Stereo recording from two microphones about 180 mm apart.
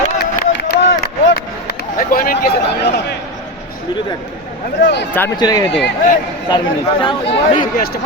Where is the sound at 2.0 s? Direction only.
55° left (ahead or behind).